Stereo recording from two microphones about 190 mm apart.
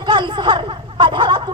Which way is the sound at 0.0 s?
25° right (ahead or behind).